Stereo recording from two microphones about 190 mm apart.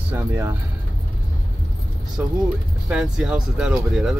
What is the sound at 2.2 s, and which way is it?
Speech, 10° right (ahead or behind).